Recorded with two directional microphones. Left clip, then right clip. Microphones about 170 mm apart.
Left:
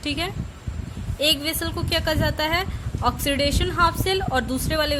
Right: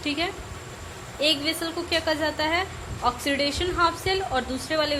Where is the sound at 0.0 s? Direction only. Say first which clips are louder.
Even; 40° left (ahead or behind).